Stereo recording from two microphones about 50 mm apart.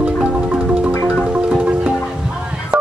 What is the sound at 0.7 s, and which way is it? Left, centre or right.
Music, right.